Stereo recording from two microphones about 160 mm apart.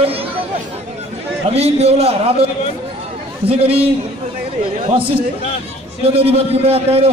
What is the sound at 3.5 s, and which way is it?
A man's voice, 35° right (ahead or behind).